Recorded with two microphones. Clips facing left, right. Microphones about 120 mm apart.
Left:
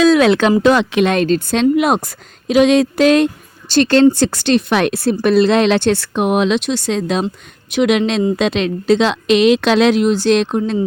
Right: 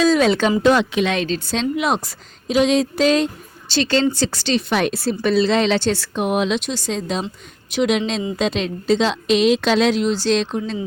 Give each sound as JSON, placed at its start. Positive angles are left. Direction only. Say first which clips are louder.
{"t": 0.0, "sound": "speech", "louder": "left 5 dB", "side_deg": 70}
{"t": 0.6, "sound": "speech", "louder": "left 3 dB", "side_deg": 90}